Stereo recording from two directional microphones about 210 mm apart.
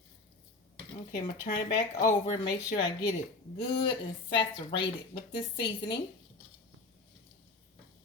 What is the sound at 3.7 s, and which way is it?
Speech, 25° left (ahead or behind).